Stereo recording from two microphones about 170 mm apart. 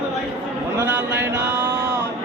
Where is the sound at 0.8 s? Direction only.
10° right (ahead or behind).